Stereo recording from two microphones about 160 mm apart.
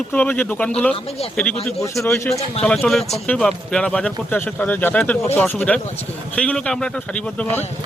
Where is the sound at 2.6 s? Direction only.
5° left (ahead or behind).